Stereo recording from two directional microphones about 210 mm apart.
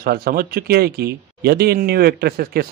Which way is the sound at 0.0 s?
45° right (ahead or behind).